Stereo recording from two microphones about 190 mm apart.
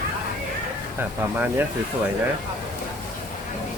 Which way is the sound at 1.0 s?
10° right (ahead or behind).